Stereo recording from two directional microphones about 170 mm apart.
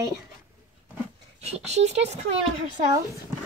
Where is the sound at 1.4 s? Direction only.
40° right (ahead or behind).